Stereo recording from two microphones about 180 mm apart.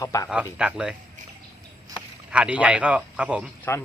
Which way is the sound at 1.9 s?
5° right (ahead or behind).